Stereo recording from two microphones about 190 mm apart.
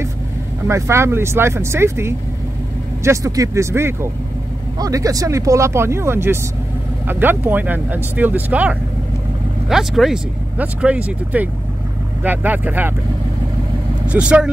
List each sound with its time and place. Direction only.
0.7 s speech: 15° right (ahead or behind)
14.0 s speech: 5° right (ahead or behind)